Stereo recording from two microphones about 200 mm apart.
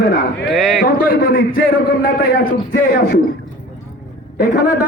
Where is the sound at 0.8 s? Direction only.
45° left (ahead or behind).